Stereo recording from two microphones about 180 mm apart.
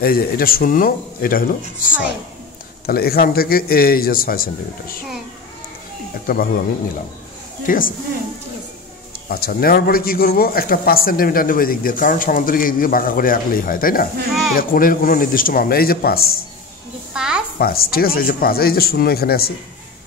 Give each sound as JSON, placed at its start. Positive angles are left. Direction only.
{"t": 0.0, "sound": "a man's voice", "side_deg": 55}
{"t": 2.9, "sound": "a man's voice", "side_deg": 60}
{"t": 6.2, "sound": "a man's voice", "side_deg": 55}
{"t": 7.6, "sound": "a man's voice", "side_deg": 50}
{"t": 9.3, "sound": "a man's voice", "side_deg": 55}
{"t": 17.1, "sound": "a sound", "side_deg": -5}
{"t": 17.6, "sound": "a man's voice", "side_deg": 55}